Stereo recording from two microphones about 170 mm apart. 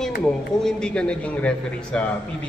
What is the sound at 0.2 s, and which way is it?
Speech, 5° left (ahead or behind).